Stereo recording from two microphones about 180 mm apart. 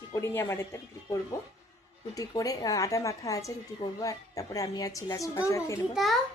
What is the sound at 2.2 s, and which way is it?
A woman's voice, 20° left (ahead or behind).